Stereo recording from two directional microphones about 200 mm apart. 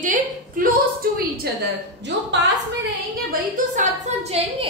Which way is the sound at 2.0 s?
60° right (ahead or behind).